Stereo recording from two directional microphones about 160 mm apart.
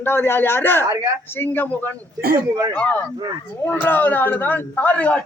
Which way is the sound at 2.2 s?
70° right (ahead or behind).